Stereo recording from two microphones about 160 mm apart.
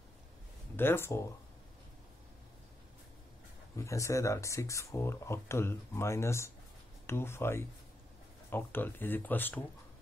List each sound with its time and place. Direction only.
0.7 s speech: 15° left (ahead or behind)
3.7 s speech: 20° left (ahead or behind)